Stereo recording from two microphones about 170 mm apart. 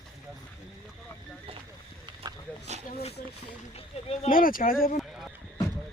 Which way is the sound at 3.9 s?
35° left (ahead or behind).